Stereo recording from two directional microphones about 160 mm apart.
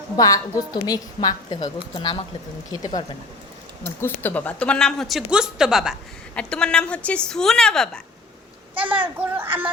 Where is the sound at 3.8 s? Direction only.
15° left (ahead or behind).